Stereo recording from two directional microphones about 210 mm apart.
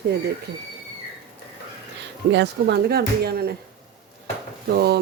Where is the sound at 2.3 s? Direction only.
55° right (ahead or behind).